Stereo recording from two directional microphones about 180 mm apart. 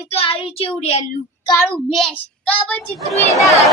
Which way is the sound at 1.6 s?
5° left (ahead or behind).